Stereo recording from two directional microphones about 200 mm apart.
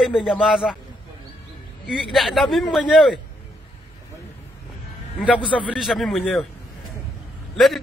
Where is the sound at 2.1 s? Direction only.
Centre (ahead or behind).